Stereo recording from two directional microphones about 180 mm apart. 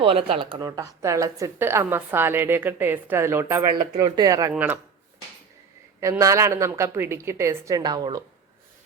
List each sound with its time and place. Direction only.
0.0 s speech: 30° right (ahead or behind)
0.8 s a woman's voice: 15° right (ahead or behind)
6.0 s a woman's voice: 20° right (ahead or behind)